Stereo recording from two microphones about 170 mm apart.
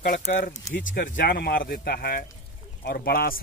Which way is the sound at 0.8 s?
55° left (ahead or behind).